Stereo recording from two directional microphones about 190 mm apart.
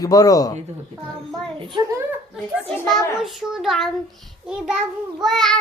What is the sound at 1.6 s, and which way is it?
Speech, 25° right (ahead or behind).